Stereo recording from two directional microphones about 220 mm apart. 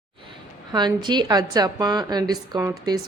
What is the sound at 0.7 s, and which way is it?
A woman's voice, 20° right (ahead or behind).